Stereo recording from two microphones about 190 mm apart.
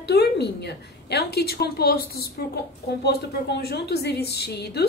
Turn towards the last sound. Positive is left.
turn(degrees=55)  # may be behind; listen again after turning